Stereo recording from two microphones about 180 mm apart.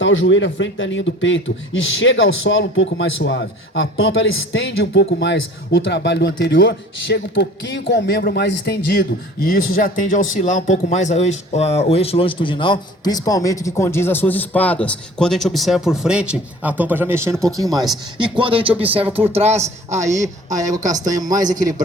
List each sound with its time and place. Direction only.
0.0 s a man's voice: 90° left; by 20.0 s 35° right (ahead or behind)
20.9 s speech: 20° right (ahead or behind)